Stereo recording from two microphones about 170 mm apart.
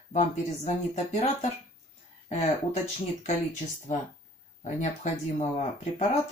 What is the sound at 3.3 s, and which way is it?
Speech, 40° left (ahead or behind).